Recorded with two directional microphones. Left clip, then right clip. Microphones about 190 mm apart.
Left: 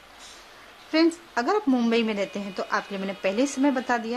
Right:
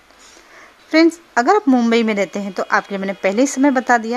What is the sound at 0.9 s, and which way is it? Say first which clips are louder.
A woman's voice: right 9 dB; 45° right (ahead or behind).